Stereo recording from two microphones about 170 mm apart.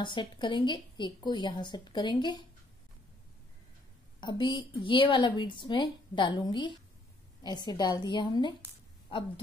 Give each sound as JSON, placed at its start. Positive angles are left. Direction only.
{"t": 0.0, "sound": "a woman's voice", "side_deg": 25}
{"t": 4.2, "sound": "a woman's voice", "side_deg": 25}